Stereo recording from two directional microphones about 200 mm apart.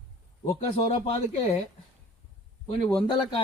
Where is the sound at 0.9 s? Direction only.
30° left (ahead or behind).